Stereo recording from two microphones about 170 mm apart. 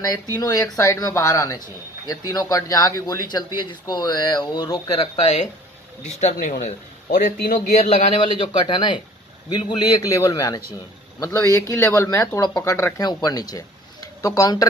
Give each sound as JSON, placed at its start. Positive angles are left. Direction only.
{"t": 0.3, "sound": "speech", "side_deg": 20}
{"t": 5.2, "sound": "speech", "side_deg": 45}
{"t": 7.8, "sound": "speech", "side_deg": 35}